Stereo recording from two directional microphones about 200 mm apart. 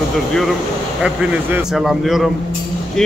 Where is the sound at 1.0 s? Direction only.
5° right (ahead or behind).